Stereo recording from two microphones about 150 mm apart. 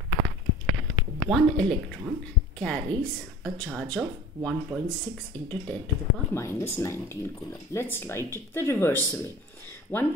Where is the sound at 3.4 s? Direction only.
Centre (ahead or behind).